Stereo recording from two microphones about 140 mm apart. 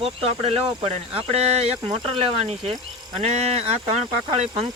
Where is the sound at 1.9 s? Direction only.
40° right (ahead or behind).